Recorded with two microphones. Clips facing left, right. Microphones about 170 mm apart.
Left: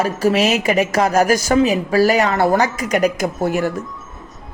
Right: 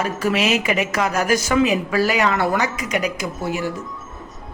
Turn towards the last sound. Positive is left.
turn(degrees=50)  # may be behind; listen again after turning